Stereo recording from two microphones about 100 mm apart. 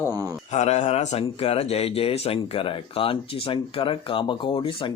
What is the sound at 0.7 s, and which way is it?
Speech, 90° left.